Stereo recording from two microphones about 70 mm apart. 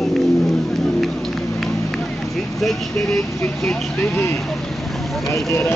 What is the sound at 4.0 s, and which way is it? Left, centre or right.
Vehicle, left.